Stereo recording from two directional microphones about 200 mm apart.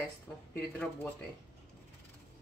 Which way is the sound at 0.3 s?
10° left (ahead or behind).